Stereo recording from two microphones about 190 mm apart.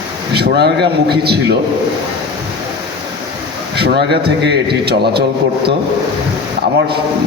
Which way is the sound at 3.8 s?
60° right (ahead or behind).